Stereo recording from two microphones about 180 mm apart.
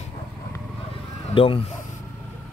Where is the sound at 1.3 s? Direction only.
30° left (ahead or behind).